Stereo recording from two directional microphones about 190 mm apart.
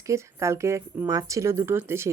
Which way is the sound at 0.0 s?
15° right (ahead or behind).